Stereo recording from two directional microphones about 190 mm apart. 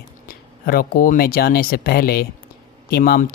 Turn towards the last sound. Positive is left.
turn(degrees=50)  # may be behind; listen again after turning